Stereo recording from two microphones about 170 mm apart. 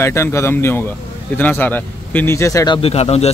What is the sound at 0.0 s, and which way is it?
Speech, 15° left (ahead or behind).